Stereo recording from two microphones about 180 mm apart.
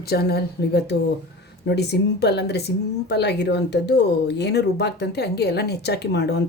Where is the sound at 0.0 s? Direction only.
60° left (ahead or behind).